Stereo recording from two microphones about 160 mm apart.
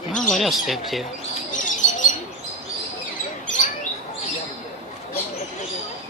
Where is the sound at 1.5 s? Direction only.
55° left (ahead or behind).